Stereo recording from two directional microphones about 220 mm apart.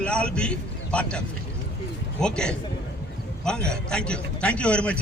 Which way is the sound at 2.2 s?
5° left (ahead or behind).